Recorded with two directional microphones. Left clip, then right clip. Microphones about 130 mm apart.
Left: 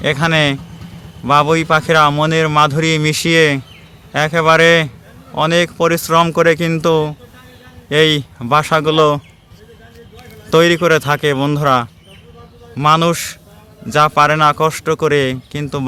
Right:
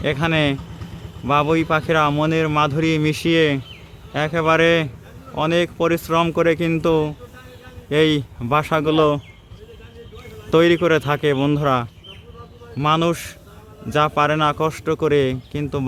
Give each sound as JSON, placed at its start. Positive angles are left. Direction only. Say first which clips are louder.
{"t": 0.0, "sound": "speech", "louder": "left 6 dB", "side_deg": 20}
{"t": 10.5, "sound": "speech", "louder": "left 4 dB", "side_deg": 15}